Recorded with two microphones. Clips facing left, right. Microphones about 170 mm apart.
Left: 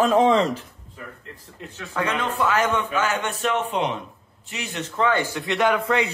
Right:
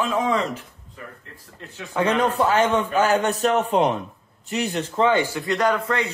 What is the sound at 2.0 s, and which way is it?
Speech, 35° right (ahead or behind).